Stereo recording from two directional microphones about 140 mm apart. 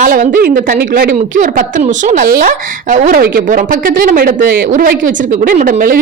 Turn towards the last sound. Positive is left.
turn(degrees=-60)  # may be behind; listen again after turning